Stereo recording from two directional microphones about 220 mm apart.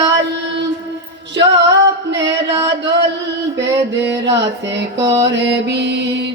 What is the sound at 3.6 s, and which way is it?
Music, 50° right (ahead or behind).